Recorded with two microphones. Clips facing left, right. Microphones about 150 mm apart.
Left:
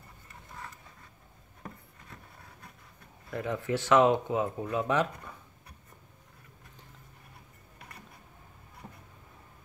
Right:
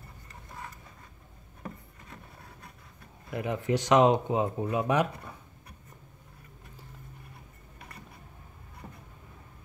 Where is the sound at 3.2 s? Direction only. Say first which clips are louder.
Right 2 dB; 15° right (ahead or behind).